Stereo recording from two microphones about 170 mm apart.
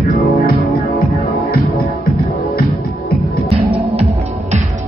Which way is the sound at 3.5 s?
35° right (ahead or behind).